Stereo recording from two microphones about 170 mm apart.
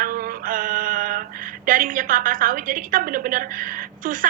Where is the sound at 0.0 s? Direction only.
55° right (ahead or behind).